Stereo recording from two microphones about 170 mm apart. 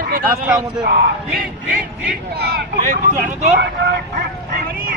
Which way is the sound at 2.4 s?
70° right (ahead or behind).